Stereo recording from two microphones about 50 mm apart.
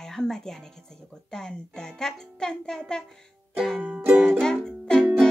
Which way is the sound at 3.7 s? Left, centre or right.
Right.